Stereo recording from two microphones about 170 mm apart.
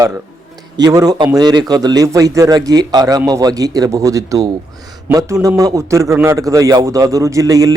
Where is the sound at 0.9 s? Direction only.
20° right (ahead or behind).